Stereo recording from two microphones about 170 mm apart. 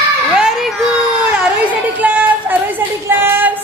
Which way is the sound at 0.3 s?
5° right (ahead or behind).